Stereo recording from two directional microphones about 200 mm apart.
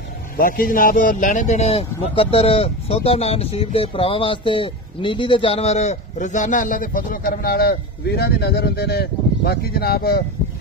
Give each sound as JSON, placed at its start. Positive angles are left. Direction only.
{"t": 0.4, "sound": "speech", "side_deg": 45}